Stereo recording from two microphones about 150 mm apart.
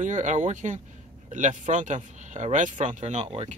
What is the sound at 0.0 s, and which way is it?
Speech, 55° right (ahead or behind).